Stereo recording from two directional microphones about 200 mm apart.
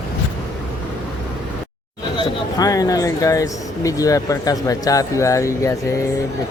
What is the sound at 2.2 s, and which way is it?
Speech, 20° left (ahead or behind).